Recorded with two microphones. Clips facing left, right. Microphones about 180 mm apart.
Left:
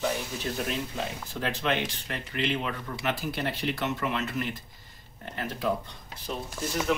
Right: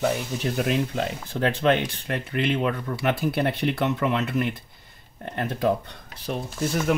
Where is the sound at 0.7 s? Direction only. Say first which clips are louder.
Right 7 dB; 65° right (ahead or behind).